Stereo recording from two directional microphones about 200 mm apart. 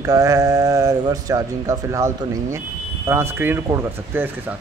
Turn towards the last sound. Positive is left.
turn(degrees=-10)  # may be behind; listen again after turning